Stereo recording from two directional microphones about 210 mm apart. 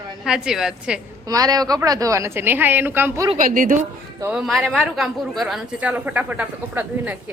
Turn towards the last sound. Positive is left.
turn(degrees=-5)  # may be behind; listen again after turning